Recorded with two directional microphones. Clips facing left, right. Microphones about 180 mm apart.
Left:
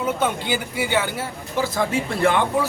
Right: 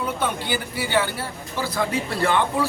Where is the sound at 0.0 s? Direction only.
15° left (ahead or behind).